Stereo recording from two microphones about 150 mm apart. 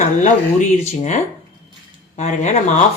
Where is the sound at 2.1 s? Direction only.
55° left (ahead or behind).